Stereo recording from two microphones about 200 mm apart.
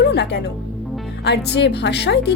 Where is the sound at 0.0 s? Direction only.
55° left (ahead or behind).